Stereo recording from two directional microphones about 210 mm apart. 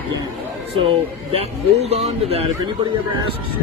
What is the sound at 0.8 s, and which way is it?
Speech, 25° right (ahead or behind).